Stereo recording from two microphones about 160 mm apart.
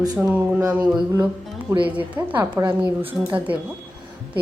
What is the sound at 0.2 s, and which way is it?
Speech, 10° right (ahead or behind).